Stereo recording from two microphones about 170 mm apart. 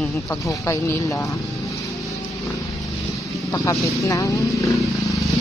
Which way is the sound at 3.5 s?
20° left (ahead or behind).